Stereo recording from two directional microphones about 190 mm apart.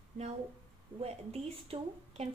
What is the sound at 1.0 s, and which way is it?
Speech, 30° right (ahead or behind).